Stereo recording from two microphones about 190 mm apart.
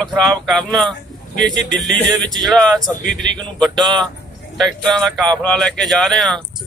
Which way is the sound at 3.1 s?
70° right (ahead or behind).